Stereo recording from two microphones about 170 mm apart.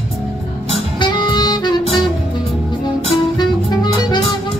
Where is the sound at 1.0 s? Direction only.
25° left (ahead or behind).